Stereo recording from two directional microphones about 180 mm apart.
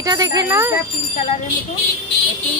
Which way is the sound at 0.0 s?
20° right (ahead or behind).